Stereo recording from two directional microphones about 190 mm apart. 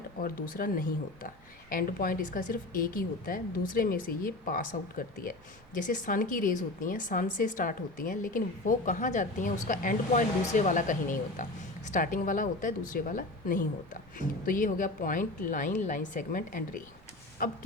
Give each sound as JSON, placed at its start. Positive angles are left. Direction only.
{"t": 0.2, "sound": "speech", "side_deg": 50}